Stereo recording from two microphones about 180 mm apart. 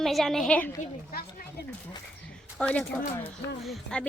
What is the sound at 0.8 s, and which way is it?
Speech, 55° left (ahead or behind).